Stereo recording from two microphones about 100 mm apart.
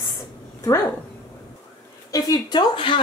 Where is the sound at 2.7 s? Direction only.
55° left (ahead or behind).